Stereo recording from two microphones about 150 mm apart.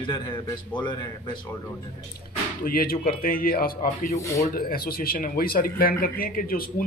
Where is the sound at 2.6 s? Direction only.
80° left.